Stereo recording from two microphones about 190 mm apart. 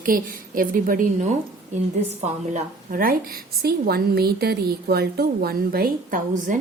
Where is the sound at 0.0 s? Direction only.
50° right (ahead or behind).